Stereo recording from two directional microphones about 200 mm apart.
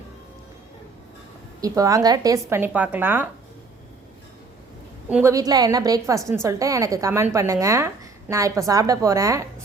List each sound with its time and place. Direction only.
1.6 s a woman's voice: 15° right (ahead or behind)
5.0 s a woman's voice: 10° right (ahead or behind)